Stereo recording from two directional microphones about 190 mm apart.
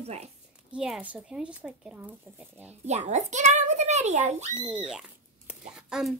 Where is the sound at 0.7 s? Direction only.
5° right (ahead or behind).